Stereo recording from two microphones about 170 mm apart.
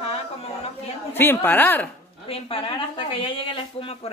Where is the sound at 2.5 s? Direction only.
30° left (ahead or behind).